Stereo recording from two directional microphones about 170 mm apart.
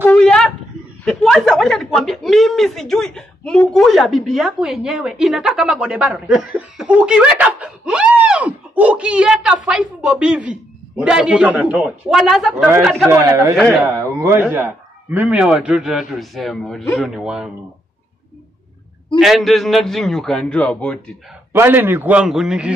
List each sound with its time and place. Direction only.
0.0 s wind instrument: 5° left (ahead or behind)
1.0 s a man's voice: centre (ahead or behind)
13.1 s a man's voice: 20° right (ahead or behind)
13.6 s a man's voice: centre (ahead or behind)
13.9 s a man's voice: 15° right (ahead or behind)
19.1 s a man's voice: centre (ahead or behind)
21.5 s a man's voice: 15° right (ahead or behind)